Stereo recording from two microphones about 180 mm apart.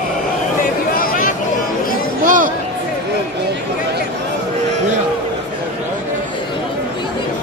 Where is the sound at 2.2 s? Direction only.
45° right (ahead or behind).